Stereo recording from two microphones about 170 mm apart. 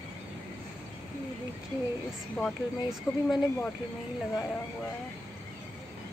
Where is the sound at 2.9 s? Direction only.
Centre (ahead or behind).